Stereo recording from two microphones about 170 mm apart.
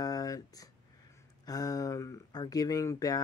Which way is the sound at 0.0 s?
20° left (ahead or behind).